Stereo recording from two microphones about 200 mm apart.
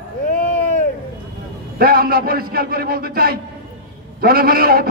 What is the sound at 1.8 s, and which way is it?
A man's voice, 45° right (ahead or behind).